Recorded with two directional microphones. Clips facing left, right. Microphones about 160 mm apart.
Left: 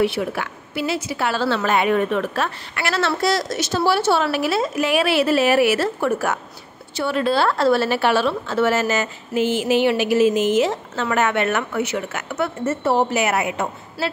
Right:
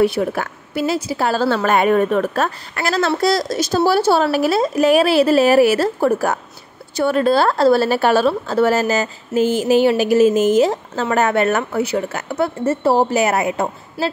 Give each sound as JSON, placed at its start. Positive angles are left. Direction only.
{"t": 0.0, "sound": "a woman's voice", "side_deg": -40}